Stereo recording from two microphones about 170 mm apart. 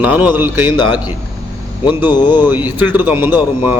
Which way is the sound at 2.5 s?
10° right (ahead or behind).